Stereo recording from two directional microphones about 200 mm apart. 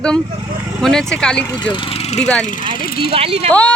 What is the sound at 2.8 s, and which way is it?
Speech, 50° left (ahead or behind).